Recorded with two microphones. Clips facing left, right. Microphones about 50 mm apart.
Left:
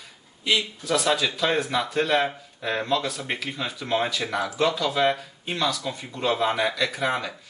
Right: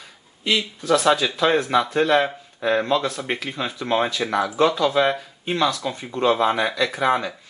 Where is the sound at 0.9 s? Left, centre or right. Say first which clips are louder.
Right 6 dB; right.